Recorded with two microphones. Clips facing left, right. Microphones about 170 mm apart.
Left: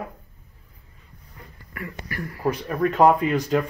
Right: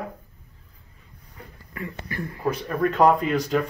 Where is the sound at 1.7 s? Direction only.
25° right (ahead or behind).